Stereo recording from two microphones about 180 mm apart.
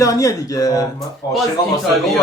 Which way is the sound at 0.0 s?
20° left (ahead or behind).